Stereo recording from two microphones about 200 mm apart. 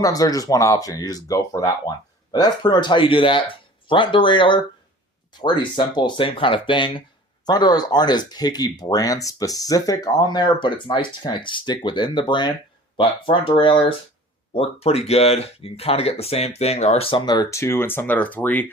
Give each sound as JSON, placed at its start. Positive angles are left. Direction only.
{"t": 0.0, "sound": "speech", "side_deg": 20}